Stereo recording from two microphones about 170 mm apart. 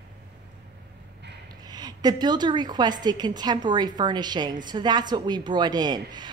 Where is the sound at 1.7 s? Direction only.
25° right (ahead or behind).